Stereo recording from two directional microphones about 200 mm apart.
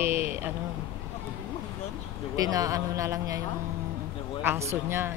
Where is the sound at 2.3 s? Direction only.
20° right (ahead or behind).